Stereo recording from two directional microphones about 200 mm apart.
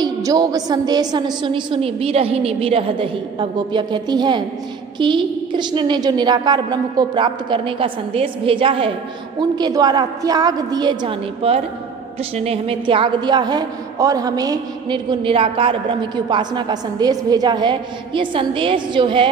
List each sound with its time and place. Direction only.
0.0 s a woman's voice: 20° right (ahead or behind)